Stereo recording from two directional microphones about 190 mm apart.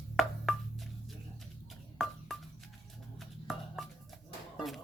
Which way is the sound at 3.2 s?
Centre (ahead or behind).